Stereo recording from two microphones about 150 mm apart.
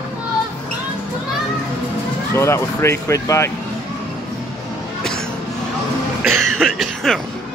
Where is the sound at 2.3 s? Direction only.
15° left (ahead or behind).